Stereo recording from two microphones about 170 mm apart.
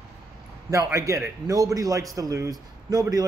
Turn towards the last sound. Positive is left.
turn(degrees=-20)  # may be behind; listen again after turning